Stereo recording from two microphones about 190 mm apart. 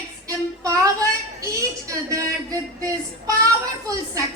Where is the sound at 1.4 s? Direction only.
15° right (ahead or behind).